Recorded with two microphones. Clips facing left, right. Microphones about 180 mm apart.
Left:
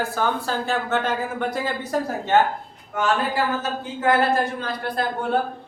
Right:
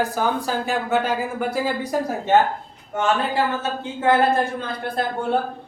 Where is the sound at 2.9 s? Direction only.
25° right (ahead or behind).